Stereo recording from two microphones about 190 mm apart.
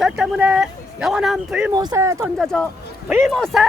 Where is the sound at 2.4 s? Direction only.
5° left (ahead or behind).